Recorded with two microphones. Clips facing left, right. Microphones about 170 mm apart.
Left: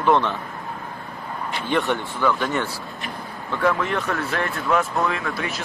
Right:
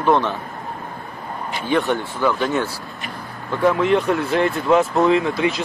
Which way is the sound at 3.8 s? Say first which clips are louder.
Right 7 dB; 20° right (ahead or behind).